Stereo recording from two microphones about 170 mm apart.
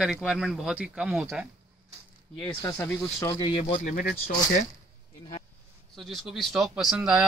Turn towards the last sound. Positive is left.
turn(degrees=-5)  # may be behind; listen again after turning